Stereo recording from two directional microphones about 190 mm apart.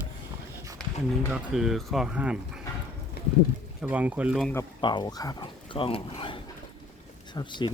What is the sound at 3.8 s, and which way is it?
Speech, 10° right (ahead or behind).